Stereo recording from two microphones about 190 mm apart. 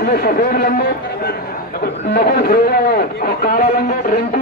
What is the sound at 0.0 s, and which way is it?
A man's voice, 55° left (ahead or behind).